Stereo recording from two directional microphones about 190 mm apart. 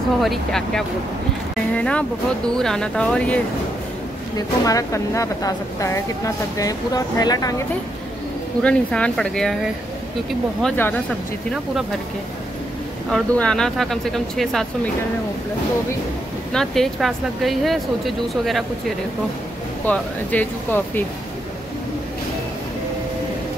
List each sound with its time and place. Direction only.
0.2 s speech: centre (ahead or behind)
4.4 s speech: 20° left (ahead or behind)
8.6 s speech: 5° left (ahead or behind)
10.6 s speech: 10° left (ahead or behind)
13.1 s speech: 5° left (ahead or behind)
16.5 s speech: centre (ahead or behind)
19.9 s speech: 10° left (ahead or behind)